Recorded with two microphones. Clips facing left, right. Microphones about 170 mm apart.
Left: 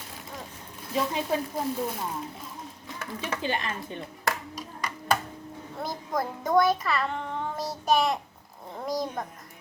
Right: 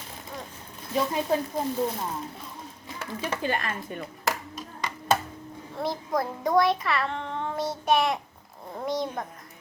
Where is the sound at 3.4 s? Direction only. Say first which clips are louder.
Even; 20° left (ahead or behind).